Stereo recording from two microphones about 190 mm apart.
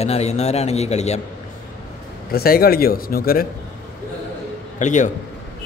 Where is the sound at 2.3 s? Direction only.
50° left (ahead or behind).